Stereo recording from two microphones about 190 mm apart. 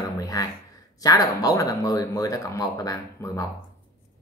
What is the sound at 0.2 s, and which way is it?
Beatboxing, 20° left (ahead or behind).